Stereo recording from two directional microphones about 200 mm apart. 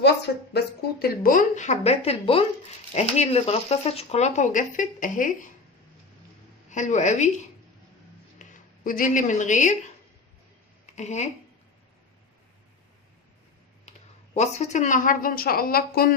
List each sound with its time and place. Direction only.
0.5 s speech: 50° left (ahead or behind)
6.7 s speech: 35° left (ahead or behind)
8.4 s speech: 40° left (ahead or behind)
10.9 s speech: 35° left (ahead or behind)
14.3 s a woman's voice: 35° left (ahead or behind)